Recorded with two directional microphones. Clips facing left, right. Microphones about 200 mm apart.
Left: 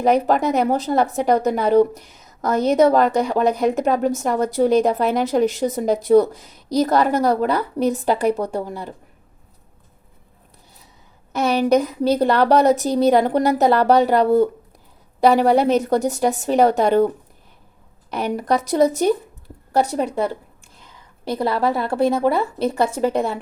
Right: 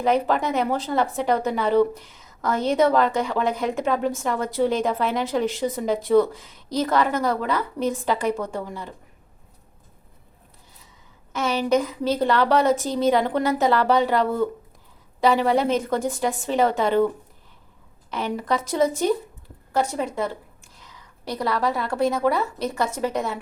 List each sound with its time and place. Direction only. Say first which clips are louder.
0.0 s a woman's voice: left 4 dB; 40° left (ahead or behind)
11.3 s a woman's voice: left 5 dB; 40° left (ahead or behind)
18.1 s a woman's voice: left 4 dB; 40° left (ahead or behind)
21.2 s a woman's voice: left 4 dB; 25° left (ahead or behind)